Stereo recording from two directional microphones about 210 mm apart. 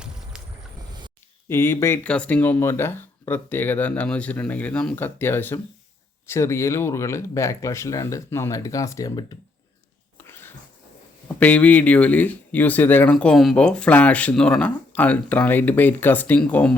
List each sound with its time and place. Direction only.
0.3 s vehicle: 5° right (ahead or behind)
1.5 s speech: 10° left (ahead or behind)
10.2 s a sound: 10° left (ahead or behind)
11.3 s speech: 5° left (ahead or behind)